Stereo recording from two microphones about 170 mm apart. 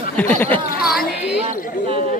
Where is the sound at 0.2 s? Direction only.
10° left (ahead or behind).